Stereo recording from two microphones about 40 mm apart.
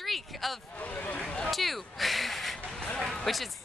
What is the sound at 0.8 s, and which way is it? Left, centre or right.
Speech, left.